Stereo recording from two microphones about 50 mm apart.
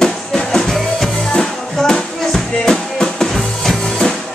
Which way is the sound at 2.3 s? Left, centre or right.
Centre.